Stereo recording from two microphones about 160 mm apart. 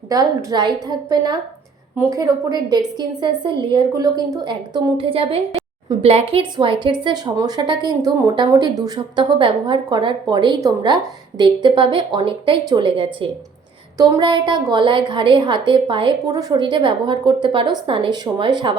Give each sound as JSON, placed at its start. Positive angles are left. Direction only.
{"t": 0.1, "sound": "a woman's voice", "side_deg": -25}